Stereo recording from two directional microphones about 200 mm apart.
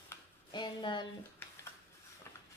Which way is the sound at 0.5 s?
25° left (ahead or behind).